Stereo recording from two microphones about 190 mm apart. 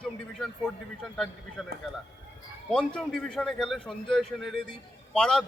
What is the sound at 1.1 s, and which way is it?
Speech, centre (ahead or behind).